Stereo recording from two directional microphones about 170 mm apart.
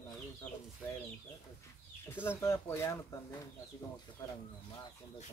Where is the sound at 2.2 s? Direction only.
15° left (ahead or behind).